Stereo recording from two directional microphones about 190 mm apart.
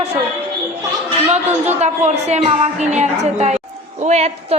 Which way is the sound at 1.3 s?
35° right (ahead or behind).